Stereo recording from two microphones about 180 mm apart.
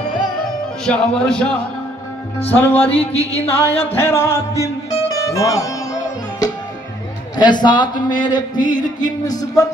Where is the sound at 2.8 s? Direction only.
35° left (ahead or behind).